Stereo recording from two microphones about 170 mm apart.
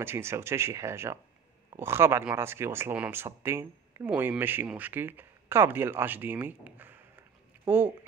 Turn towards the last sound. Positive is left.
turn(degrees=-10)  # may be behind; listen again after turning